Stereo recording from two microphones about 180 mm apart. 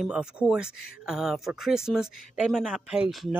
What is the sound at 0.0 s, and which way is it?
Speech, 5° right (ahead or behind).